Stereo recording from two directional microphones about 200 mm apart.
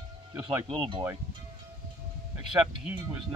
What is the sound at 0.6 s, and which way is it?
Speech, 25° right (ahead or behind).